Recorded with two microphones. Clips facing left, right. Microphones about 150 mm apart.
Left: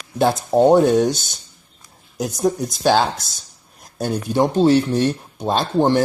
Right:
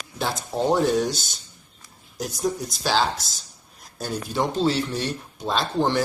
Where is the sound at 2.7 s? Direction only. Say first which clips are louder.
Left 8 dB; 50° left (ahead or behind).